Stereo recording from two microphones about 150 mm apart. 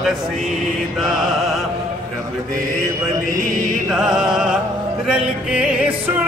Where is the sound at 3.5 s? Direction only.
60° right (ahead or behind).